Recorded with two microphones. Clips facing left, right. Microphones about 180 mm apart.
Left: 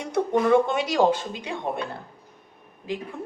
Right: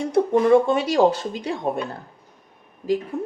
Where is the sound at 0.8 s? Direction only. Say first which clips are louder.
Right 3 dB; 40° right (ahead or behind).